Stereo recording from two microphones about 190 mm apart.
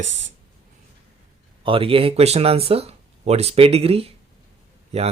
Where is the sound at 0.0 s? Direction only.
70° right (ahead or behind).